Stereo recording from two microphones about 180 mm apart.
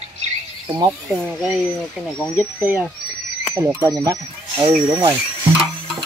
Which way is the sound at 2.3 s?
10° right (ahead or behind).